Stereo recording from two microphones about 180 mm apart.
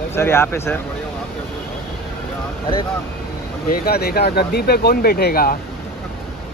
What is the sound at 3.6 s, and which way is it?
Speech, 55° left (ahead or behind).